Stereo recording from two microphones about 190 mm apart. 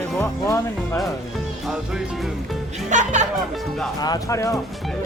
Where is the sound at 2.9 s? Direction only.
40° right (ahead or behind).